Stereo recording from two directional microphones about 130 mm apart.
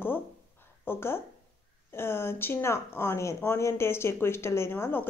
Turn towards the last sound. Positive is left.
turn(degrees=15)  # may be behind; listen again after turning